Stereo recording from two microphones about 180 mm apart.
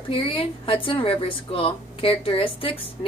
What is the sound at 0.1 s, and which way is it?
Speech, 30° left (ahead or behind).